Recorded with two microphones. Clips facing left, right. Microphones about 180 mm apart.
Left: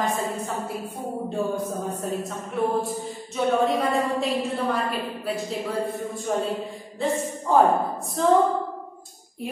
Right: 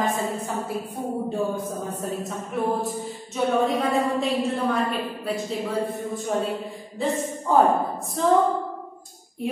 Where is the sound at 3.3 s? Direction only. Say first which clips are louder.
Even; centre (ahead or behind).